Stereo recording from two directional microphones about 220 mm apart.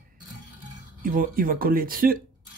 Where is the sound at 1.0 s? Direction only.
40° right (ahead or behind).